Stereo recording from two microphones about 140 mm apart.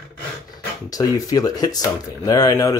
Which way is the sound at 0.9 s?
25° left (ahead or behind).